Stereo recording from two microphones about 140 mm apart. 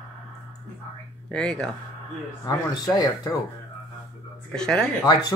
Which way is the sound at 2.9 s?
25° left (ahead or behind).